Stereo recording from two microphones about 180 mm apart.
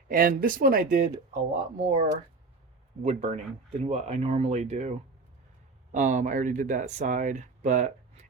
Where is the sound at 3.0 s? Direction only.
40° right (ahead or behind).